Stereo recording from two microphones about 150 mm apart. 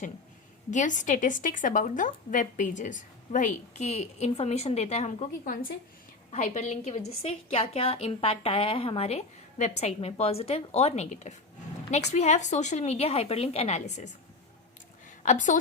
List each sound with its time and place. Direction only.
0.7 s a woman's voice: 55° left (ahead or behind)
6.3 s a woman's voice: 55° left (ahead or behind)
15.2 s a woman's voice: 55° left (ahead or behind)